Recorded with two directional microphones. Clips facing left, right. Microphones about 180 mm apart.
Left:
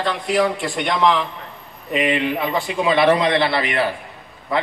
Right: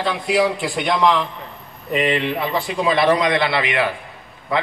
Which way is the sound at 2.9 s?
25° left (ahead or behind).